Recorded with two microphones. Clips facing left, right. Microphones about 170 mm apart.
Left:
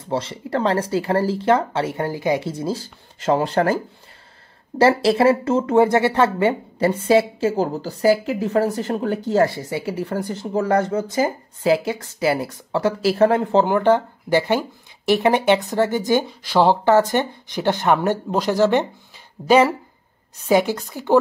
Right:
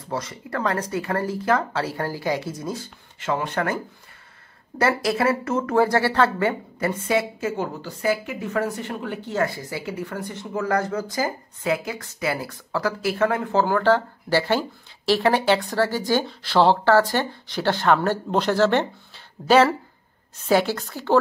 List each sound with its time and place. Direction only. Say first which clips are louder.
0.0 s a woman's voice: left 5 dB; 30° left (ahead or behind)